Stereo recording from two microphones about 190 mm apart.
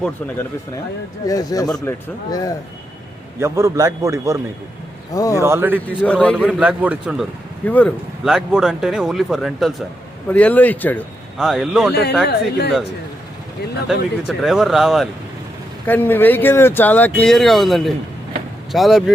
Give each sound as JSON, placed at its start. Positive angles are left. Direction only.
{"t": 1.3, "sound": "a man's voice", "side_deg": 20}
{"t": 3.4, "sound": "a man's voice", "side_deg": -15}
{"t": 5.1, "sound": "speech", "side_deg": 20}
{"t": 5.4, "sound": "a man's voice", "side_deg": -15}
{"t": 6.1, "sound": "speech", "side_deg": 5}
{"t": 6.5, "sound": "speech", "side_deg": -5}
{"t": 7.6, "sound": "speech", "side_deg": 10}
{"t": 11.3, "sound": "speech", "side_deg": 0}
{"t": 12.3, "sound": "speech", "side_deg": 60}
{"t": 13.8, "sound": "speech", "side_deg": 0}
{"t": 15.9, "sound": "speech", "side_deg": 10}